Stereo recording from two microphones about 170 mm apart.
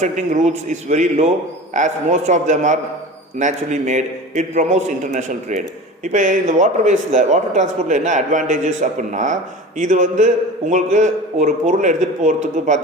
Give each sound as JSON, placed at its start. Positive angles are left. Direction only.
{"t": 0.7, "sound": "a man's voice", "side_deg": -45}